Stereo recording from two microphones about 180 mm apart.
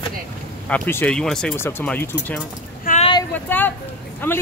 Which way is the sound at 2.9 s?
50° left (ahead or behind).